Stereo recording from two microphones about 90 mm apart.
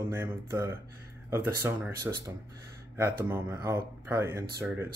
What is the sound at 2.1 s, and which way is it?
Speech, 35° right (ahead or behind).